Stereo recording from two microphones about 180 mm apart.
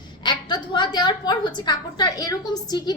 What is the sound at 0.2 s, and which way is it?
A woman's voice, 25° left (ahead or behind).